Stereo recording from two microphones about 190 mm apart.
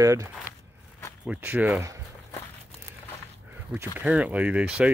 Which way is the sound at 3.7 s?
10° right (ahead or behind).